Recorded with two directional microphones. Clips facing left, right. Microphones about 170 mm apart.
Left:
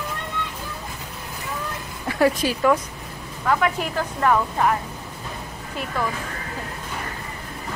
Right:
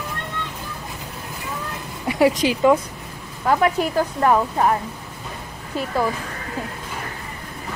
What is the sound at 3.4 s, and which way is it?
Speech, 35° right (ahead or behind).